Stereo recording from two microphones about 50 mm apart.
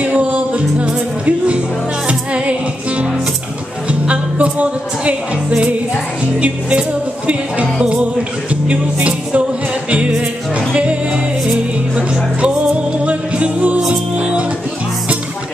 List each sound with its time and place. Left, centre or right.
0.0 s music: right
4.1 s speech: right
7.2 s music: right
13.0 s music: right